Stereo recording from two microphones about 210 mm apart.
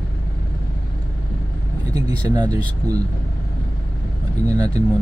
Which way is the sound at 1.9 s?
15° right (ahead or behind).